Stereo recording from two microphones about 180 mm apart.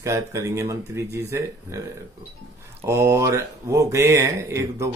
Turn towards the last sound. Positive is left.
turn(degrees=-15)  # may be behind; listen again after turning